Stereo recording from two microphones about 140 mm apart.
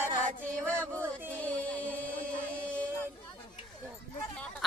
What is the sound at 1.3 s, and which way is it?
Music, 10° left (ahead or behind).